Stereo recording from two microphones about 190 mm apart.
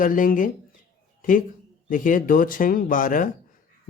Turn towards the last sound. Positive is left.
turn(degrees=45)  # may be behind; listen again after turning